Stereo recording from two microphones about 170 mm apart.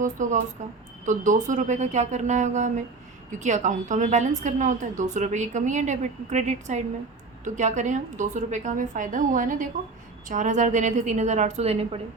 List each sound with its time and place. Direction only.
0.0 s a woman's voice: 45° right (ahead or behind)